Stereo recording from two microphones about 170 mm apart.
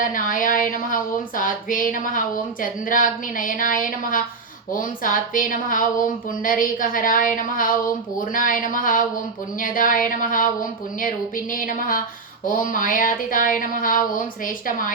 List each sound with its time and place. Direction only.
0.0 s speech: 50° left (ahead or behind)
11.5 s speech: 50° left (ahead or behind)